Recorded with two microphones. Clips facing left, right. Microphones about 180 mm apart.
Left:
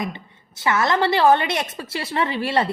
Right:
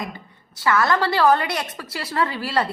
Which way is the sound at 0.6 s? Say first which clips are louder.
Even; 20° left (ahead or behind).